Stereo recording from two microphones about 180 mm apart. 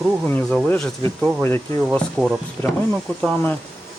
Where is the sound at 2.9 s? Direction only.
5° left (ahead or behind).